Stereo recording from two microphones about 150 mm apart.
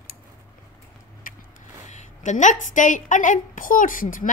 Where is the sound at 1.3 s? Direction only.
65° left (ahead or behind).